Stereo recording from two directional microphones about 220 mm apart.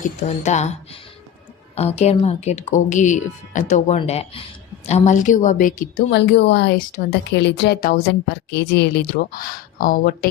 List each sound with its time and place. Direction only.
0.0 s speech: 35° left (ahead or behind)
6.1 s speech: 50° left (ahead or behind)